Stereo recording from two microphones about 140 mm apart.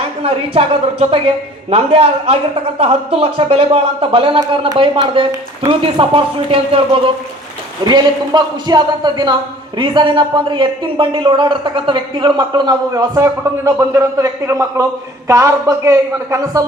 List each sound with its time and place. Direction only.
0.2 s a woman's voice: 45° right (ahead or behind); by 16.6 s 25° right (ahead or behind)